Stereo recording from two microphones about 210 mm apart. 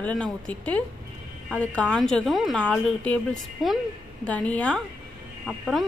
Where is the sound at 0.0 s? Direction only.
5° left (ahead or behind).